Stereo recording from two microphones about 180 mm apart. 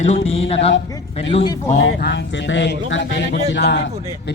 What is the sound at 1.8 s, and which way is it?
Speech, 85° left.